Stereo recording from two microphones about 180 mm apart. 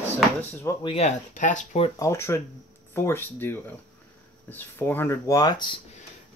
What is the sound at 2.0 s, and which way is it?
Speech, 15° left (ahead or behind).